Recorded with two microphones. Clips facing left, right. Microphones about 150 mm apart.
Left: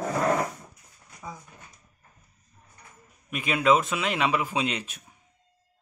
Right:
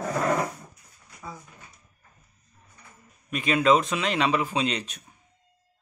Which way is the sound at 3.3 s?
10° left (ahead or behind).